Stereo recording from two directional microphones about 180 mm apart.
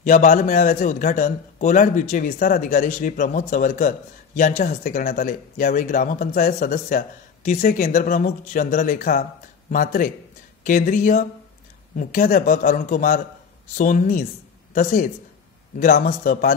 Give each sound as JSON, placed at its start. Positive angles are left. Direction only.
{"t": 0.0, "sound": "speech", "side_deg": 45}